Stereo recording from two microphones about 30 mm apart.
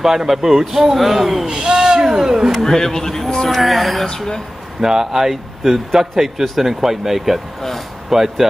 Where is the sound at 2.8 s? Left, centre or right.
Centre.